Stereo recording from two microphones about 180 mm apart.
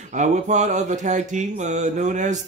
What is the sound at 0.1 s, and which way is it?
Speech, 40° right (ahead or behind).